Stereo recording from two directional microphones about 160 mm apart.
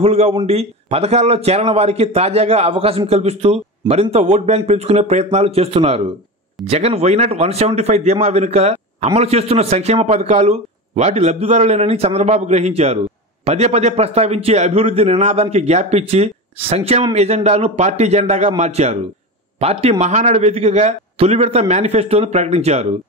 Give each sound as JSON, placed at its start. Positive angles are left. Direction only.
{"t": 0.0, "sound": "a man's voice", "side_deg": -40}